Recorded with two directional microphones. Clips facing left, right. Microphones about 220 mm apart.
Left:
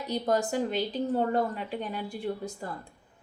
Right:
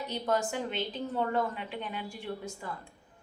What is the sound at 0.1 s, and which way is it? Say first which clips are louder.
A woman's voice: left 4 dB; 35° left (ahead or behind).